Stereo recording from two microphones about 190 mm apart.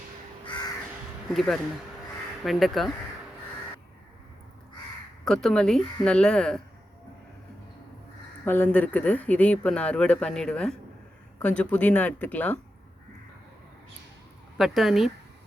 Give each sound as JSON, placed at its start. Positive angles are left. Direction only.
{"t": 1.3, "sound": "speech", "side_deg": 0}
{"t": 5.2, "sound": "speech", "side_deg": 0}
{"t": 8.4, "sound": "speech", "side_deg": 10}
{"t": 14.6, "sound": "speech", "side_deg": 0}